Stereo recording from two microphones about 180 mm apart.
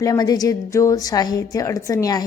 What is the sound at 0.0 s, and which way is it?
A woman's voice, 20° left (ahead or behind).